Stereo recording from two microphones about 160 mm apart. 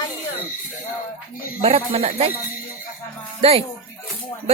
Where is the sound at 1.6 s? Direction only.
35° right (ahead or behind).